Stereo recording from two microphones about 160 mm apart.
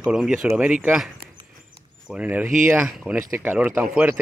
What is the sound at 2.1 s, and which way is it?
Speech, 10° right (ahead or behind).